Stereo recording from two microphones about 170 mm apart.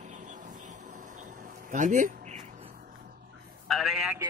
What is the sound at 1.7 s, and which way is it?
Speech, 45° right (ahead or behind).